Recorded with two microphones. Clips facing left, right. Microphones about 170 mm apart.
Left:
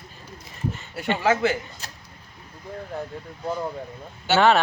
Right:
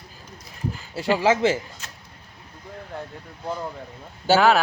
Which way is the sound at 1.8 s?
35° left (ahead or behind).